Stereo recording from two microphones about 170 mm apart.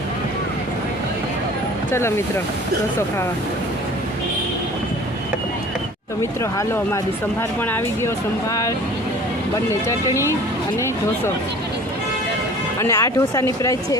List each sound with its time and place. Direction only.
1.9 s speech: 15° left (ahead or behind)
6.4 s speech: 15° left (ahead or behind)
12.8 s speech: 15° left (ahead or behind)